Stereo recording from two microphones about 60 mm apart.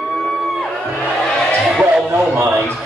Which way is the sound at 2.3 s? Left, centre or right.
Right.